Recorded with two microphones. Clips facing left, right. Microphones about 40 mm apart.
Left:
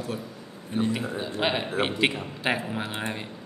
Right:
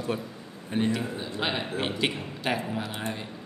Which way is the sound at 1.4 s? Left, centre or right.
Centre.